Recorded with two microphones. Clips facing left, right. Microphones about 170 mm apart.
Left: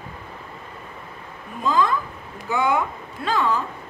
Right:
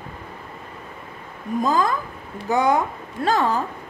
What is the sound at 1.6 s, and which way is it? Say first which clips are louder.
A woman's voice: even; 40° right (ahead or behind).